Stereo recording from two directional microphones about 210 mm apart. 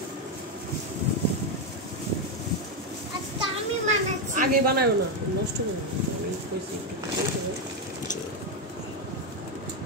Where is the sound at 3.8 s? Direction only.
40° right (ahead or behind).